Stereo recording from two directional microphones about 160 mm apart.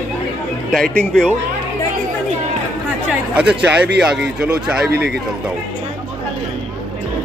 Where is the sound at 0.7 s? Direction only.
5° left (ahead or behind).